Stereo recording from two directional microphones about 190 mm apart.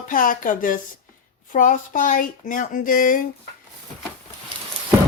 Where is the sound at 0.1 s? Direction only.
45° left (ahead or behind).